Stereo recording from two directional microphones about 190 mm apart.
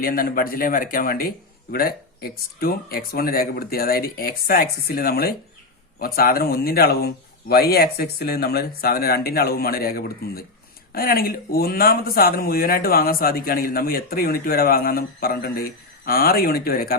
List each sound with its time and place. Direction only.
0.0 s speech: 50° left (ahead or behind)